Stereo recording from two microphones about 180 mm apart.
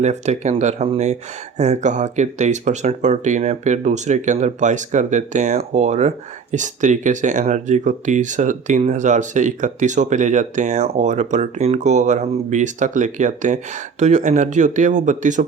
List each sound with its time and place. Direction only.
0.0 s speech: 40° right (ahead or behind)